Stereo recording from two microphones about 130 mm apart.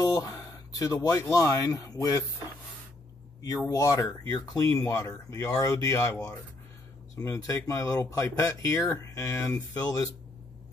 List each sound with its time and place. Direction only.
0.0 s a sound: 25° left (ahead or behind)
0.7 s speech: 25° left (ahead or behind)
3.4 s speech: 30° left (ahead or behind)